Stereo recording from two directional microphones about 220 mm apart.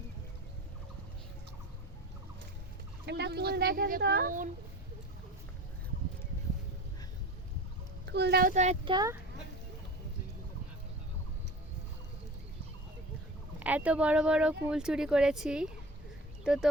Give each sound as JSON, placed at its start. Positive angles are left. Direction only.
{"t": 3.1, "sound": "speech", "side_deg": -50}
{"t": 8.0, "sound": "speech", "side_deg": -50}
{"t": 8.5, "sound": "speech", "side_deg": -30}
{"t": 13.6, "sound": "speech", "side_deg": -5}